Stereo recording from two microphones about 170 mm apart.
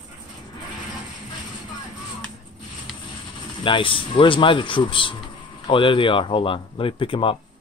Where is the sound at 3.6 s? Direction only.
30° left (ahead or behind).